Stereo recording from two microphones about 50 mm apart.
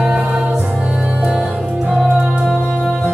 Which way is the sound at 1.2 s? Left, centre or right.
Centre.